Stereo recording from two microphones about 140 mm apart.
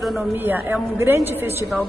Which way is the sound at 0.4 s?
15° right (ahead or behind).